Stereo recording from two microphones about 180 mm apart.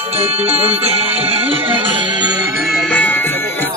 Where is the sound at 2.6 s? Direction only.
Centre (ahead or behind).